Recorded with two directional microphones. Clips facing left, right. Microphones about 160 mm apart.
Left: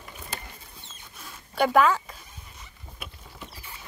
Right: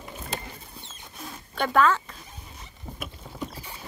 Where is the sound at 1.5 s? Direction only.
10° left (ahead or behind).